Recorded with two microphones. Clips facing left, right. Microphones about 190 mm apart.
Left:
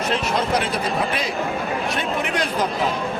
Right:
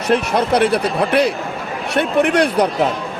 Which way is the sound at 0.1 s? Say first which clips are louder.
Right 8 dB; 65° right (ahead or behind).